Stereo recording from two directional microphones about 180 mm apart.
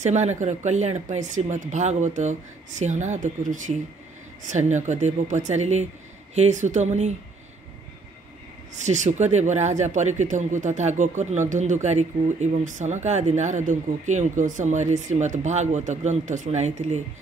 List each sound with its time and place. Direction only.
0.0 s speech: 40° right (ahead or behind)
8.7 s speech: 40° right (ahead or behind)